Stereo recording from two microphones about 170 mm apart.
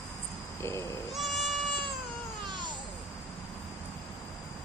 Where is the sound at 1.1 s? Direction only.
Centre (ahead or behind).